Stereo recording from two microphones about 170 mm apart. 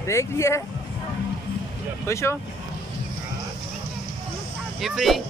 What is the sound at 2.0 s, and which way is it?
Speech, 15° left (ahead or behind).